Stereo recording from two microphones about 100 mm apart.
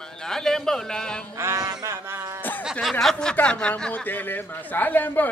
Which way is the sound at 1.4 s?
25° right (ahead or behind).